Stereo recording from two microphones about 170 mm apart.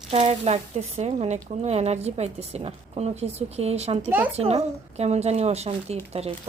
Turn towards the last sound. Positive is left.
turn(degrees=-35)  # may be behind; listen again after turning